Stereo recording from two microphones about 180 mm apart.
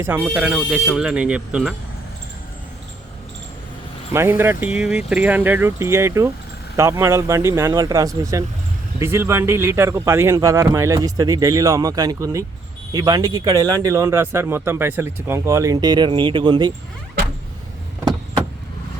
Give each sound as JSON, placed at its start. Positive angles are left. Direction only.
{"t": 0.3, "sound": "speech", "side_deg": -5}
{"t": 4.1, "sound": "speech", "side_deg": -15}